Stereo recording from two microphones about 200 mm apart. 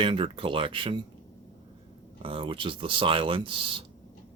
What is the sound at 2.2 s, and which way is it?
Speech, 25° right (ahead or behind).